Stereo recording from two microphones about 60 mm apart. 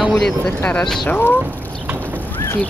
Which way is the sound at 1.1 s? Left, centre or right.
Left.